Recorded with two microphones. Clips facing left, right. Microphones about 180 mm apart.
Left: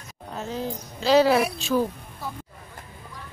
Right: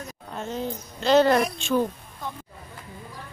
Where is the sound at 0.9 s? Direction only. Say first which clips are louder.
Even; 5° left (ahead or behind).